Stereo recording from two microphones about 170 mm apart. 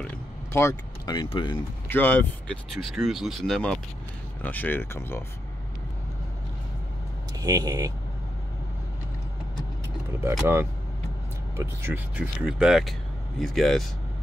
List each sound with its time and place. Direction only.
0.0 s a sound: 10° left (ahead or behind); by 1.6 s 30° left (ahead or behind)
1.9 s speech: 10° left (ahead or behind)
7.3 s speech: 20° right (ahead or behind)
11.5 s speech: 15° right (ahead or behind)